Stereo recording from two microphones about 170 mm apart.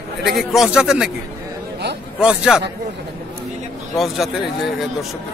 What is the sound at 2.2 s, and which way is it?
Speech, 5° right (ahead or behind).